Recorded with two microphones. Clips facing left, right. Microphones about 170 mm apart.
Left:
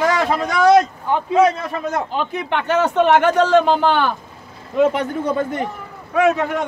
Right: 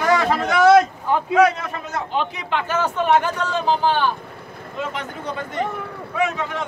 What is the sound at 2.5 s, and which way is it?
Speech, 70° left (ahead or behind).